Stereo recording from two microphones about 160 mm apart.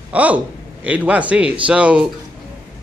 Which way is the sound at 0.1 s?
10° right (ahead or behind).